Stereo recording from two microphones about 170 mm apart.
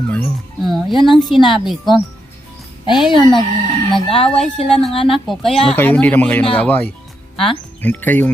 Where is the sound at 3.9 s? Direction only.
35° left (ahead or behind).